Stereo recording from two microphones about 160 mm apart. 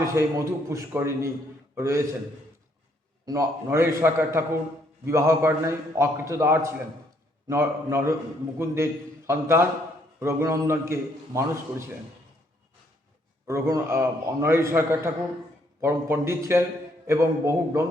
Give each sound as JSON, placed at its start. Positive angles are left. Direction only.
{"t": 0.1, "sound": "a man's voice", "side_deg": -20}
{"t": 3.2, "sound": "a man's voice", "side_deg": -20}
{"t": 13.5, "sound": "a man's voice", "side_deg": -20}